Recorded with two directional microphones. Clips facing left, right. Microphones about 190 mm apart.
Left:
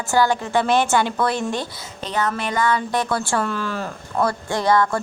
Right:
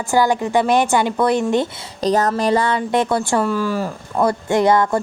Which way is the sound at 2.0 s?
40° right (ahead or behind).